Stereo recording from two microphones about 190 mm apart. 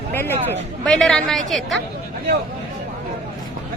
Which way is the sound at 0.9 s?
Centre (ahead or behind).